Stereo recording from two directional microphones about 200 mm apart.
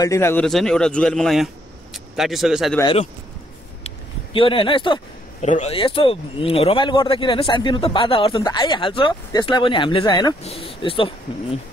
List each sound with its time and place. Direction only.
0.0 s a man's voice: 15° left (ahead or behind)
2.8 s speech: 30° left (ahead or behind)
3.8 s a sound: 25° left (ahead or behind)
5.5 s speech: 30° left (ahead or behind)